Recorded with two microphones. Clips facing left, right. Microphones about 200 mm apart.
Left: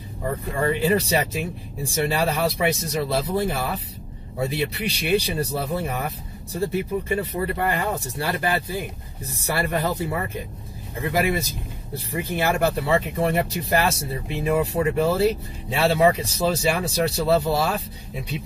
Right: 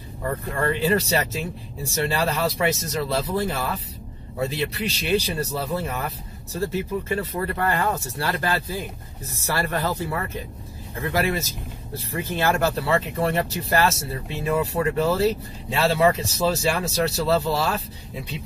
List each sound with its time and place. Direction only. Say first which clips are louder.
0.2 s speech: left 1 dB; 15° left (ahead or behind)